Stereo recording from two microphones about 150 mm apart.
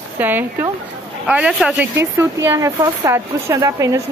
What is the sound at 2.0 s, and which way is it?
Speech, 20° right (ahead or behind).